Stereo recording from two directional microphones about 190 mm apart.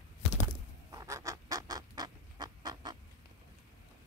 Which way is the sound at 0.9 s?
15° right (ahead or behind).